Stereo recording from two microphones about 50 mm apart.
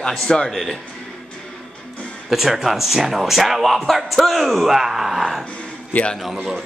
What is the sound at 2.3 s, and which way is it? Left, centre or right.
Speech, centre.